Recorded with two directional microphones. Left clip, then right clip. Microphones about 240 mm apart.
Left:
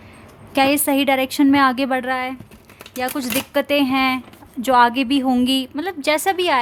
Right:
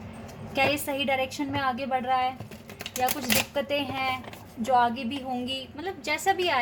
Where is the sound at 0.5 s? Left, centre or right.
Left.